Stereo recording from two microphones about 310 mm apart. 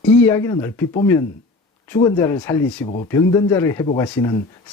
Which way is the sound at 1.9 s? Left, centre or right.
Centre.